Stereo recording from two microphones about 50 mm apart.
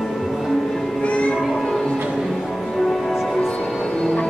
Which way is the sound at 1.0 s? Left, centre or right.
Left.